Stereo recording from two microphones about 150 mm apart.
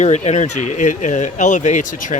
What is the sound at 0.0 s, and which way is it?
Speech, 50° left (ahead or behind).